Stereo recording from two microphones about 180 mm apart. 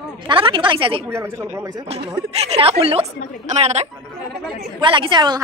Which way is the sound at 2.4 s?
35° right (ahead or behind).